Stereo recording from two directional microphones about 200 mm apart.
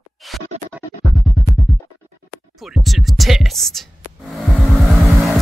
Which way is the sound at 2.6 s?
Centre (ahead or behind).